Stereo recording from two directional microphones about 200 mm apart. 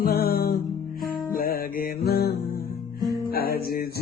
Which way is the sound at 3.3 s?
50° left (ahead or behind).